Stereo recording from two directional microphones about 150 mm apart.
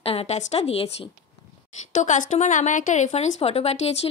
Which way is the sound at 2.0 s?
55° left (ahead or behind).